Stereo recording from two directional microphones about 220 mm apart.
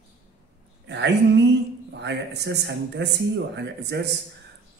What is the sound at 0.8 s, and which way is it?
A man's voice, 55° right (ahead or behind).